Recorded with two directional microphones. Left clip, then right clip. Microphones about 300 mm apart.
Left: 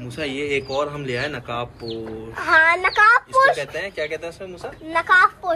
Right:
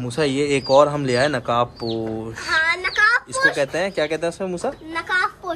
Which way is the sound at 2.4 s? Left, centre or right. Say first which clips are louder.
Left 5 dB; centre.